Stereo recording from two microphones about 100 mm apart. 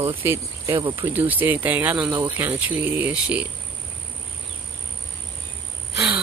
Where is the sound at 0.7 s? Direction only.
50° right (ahead or behind).